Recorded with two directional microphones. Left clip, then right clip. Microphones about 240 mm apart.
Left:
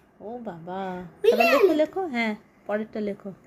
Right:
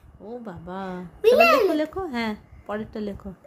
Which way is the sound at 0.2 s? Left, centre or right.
Centre.